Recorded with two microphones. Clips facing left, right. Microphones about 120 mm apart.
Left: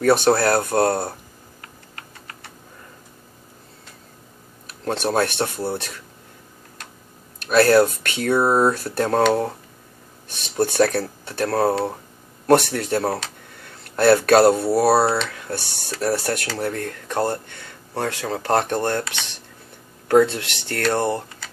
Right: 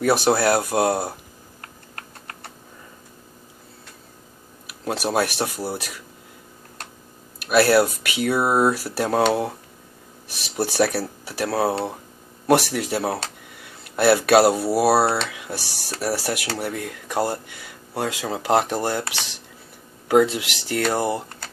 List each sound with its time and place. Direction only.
0.0 s speech: 5° right (ahead or behind)
1.6 s typing: 50° right (ahead or behind)
4.6 s speech: 5° right (ahead or behind)
7.3 s speech: 5° right (ahead or behind)
20.1 s speech: 5° right (ahead or behind)